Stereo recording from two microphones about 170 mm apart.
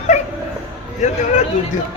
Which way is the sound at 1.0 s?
45° left (ahead or behind).